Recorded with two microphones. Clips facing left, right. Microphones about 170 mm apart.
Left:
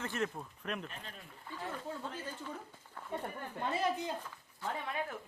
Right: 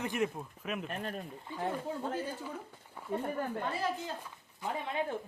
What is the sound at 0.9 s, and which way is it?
Speech, 60° right (ahead or behind).